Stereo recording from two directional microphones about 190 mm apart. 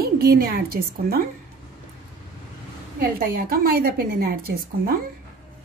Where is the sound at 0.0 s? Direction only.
55° right (ahead or behind).